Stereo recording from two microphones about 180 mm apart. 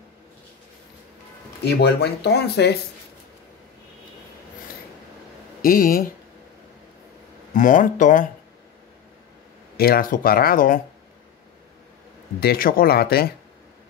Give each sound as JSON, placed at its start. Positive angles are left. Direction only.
{"t": 1.6, "sound": "speech", "side_deg": 65}
{"t": 5.6, "sound": "speech", "side_deg": 50}
{"t": 7.5, "sound": "speech", "side_deg": 45}
{"t": 9.8, "sound": "speech", "side_deg": 55}
{"t": 12.4, "sound": "speech", "side_deg": 55}